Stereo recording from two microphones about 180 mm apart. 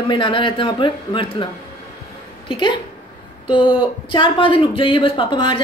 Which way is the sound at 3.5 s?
30° left (ahead or behind).